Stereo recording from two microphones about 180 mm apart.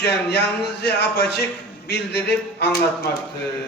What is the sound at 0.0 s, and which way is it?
A man's voice, 65° left (ahead or behind).